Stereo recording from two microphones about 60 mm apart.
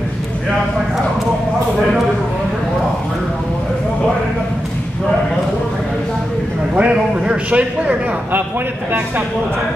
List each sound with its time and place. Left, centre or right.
6.7 s a man's voice: centre